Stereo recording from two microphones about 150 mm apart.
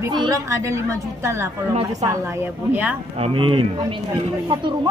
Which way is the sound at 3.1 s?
40° right (ahead or behind).